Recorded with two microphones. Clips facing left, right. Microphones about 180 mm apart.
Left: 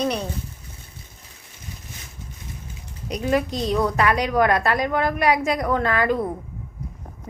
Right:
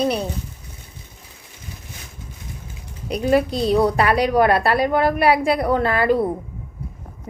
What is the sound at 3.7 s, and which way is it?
A woman's voice, 35° right (ahead or behind).